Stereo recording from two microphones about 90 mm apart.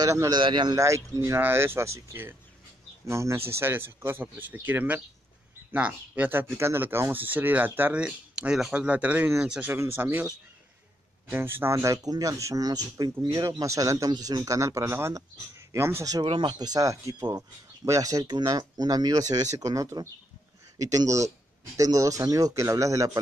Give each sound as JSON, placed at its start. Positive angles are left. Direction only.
{"t": 0.0, "sound": "speech", "side_deg": -35}
{"t": 0.3, "sound": "speech", "side_deg": -60}
{"t": 0.7, "sound": "speech", "side_deg": -35}
{"t": 9.7, "sound": "speech", "side_deg": -25}
{"t": 16.3, "sound": "speech", "side_deg": -60}